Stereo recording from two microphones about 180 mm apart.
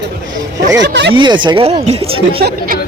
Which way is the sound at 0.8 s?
75° right (ahead or behind).